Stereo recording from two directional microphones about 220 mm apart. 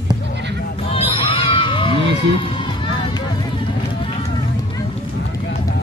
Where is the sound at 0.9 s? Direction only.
25° left (ahead or behind).